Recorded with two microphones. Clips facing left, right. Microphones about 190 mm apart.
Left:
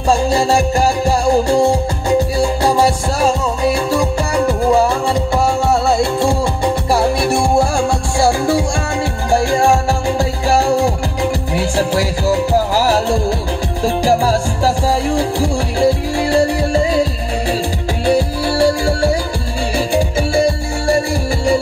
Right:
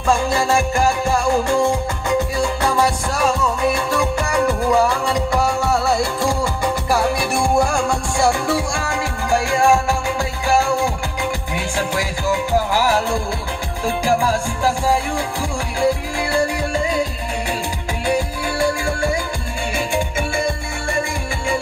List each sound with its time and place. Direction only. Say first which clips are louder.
0.1 s music: left 4 dB; 35° left (ahead or behind)